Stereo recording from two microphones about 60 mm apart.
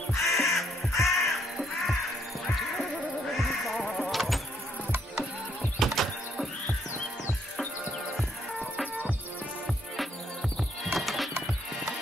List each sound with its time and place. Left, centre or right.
0.3 s crow: centre
3.3 s music: centre
4.1 s vehicle: centre
5.8 s music: centre
10.9 s music: centre